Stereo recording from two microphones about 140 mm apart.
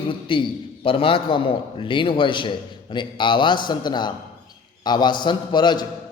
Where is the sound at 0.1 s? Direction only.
35° left (ahead or behind).